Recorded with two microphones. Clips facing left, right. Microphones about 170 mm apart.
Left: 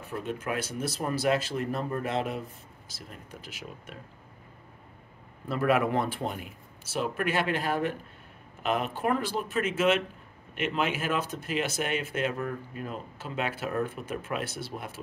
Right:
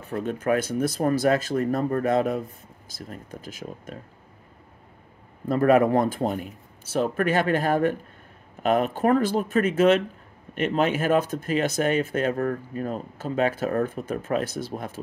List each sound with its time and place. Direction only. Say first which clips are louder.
0.1 s speech: right 8 dB; 45° right (ahead or behind)
5.5 s speech: right 7 dB; 45° right (ahead or behind)